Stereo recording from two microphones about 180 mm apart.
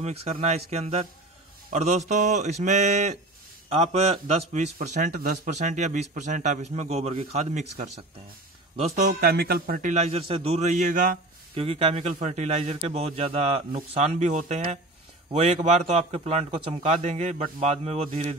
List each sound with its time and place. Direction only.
0.0 s a man's voice: 35° right (ahead or behind)
4.7 s a man's voice: 50° right (ahead or behind); by 7.6 s 35° right (ahead or behind)
8.8 s a man's voice: 40° right (ahead or behind)
9.2 s a man's voice: 60° right (ahead or behind)
11.5 s a man's voice: 30° right (ahead or behind)